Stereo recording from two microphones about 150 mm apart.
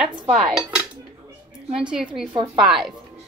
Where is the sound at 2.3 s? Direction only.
30° right (ahead or behind).